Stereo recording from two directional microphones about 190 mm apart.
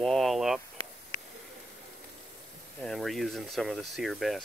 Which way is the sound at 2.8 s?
Centre (ahead or behind).